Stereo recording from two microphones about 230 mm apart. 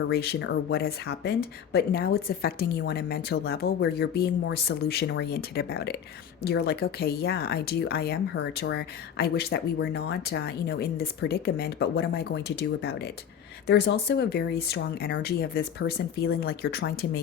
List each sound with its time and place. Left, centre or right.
0.1 s speech: left